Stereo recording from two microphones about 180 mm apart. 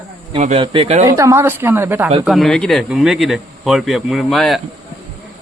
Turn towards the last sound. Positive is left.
turn(degrees=0)  # may be behind; listen again after turning